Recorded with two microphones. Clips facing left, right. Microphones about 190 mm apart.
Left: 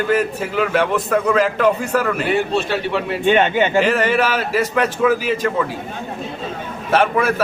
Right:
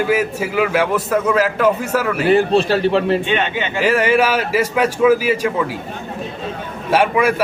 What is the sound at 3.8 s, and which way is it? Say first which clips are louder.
A man's voice: right 7 dB; 10° right (ahead or behind).